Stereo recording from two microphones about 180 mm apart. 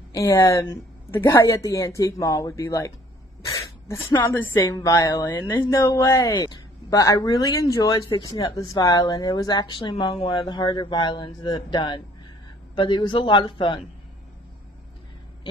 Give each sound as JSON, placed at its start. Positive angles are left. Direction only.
{"t": 0.1, "sound": "a woman's voice", "side_deg": 20}